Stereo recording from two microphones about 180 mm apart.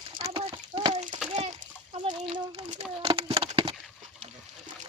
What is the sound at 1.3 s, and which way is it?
Splash, 35° right (ahead or behind).